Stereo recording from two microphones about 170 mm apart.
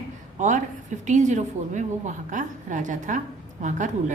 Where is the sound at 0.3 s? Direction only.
45° right (ahead or behind).